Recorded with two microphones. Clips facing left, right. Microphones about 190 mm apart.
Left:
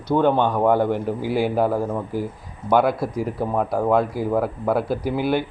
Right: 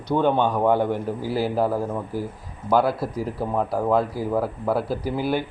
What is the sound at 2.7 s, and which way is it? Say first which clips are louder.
Speech: left 2 dB; 5° right (ahead or behind).